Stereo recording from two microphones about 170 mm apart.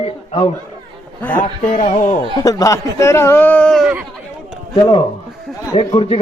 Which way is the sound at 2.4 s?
20° left (ahead or behind).